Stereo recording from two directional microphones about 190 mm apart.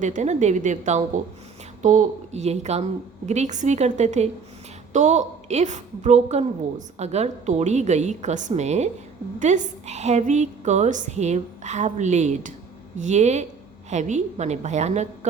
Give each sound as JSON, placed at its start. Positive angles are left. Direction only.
{"t": 0.0, "sound": "a woman's voice", "side_deg": -40}